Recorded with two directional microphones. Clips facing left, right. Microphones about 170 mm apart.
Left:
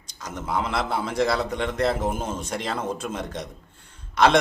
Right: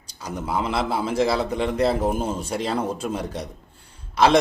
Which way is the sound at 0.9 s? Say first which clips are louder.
Right 3 dB; 30° right (ahead or behind).